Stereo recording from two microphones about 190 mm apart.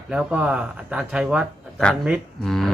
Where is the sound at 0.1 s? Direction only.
5° right (ahead or behind).